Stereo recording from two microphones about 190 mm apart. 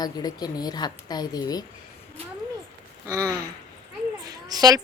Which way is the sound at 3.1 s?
20° right (ahead or behind).